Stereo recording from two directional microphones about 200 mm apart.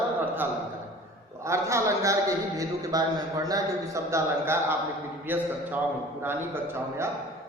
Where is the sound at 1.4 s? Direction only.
15° right (ahead or behind).